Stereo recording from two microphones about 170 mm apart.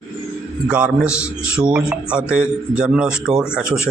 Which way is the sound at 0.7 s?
5° right (ahead or behind).